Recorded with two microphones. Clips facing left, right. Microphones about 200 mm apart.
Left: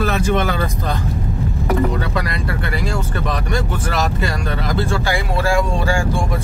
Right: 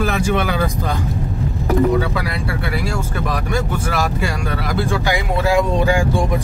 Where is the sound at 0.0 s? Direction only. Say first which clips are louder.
Even; 10° right (ahead or behind).